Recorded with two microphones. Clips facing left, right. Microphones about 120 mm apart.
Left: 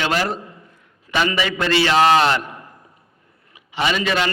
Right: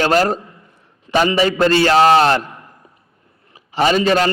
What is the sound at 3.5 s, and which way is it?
Speech, 40° right (ahead or behind).